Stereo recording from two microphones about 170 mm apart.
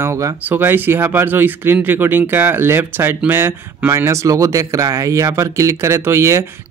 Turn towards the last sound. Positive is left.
turn(degrees=-15)  # may be behind; listen again after turning